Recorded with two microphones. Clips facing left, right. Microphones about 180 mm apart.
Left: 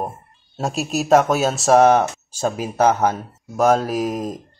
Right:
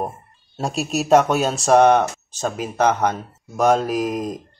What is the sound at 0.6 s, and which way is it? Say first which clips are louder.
Speech: even; centre (ahead or behind).